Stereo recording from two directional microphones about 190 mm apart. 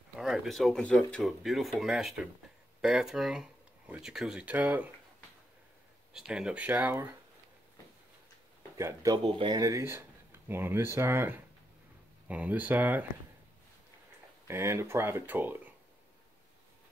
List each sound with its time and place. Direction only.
0.1 s speech: centre (ahead or behind)
6.1 s speech: 5° right (ahead or behind)
8.7 s speech: 15° right (ahead or behind)
14.5 s speech: 15° right (ahead or behind)